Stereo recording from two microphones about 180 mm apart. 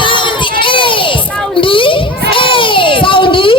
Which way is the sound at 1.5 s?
30° left (ahead or behind).